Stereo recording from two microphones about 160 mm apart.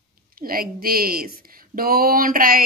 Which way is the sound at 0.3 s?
65° right (ahead or behind).